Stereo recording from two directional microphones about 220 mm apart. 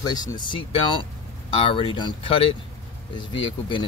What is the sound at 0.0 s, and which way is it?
Speech, 15° left (ahead or behind).